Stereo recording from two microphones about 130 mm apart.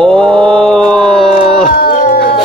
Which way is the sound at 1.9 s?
90° left.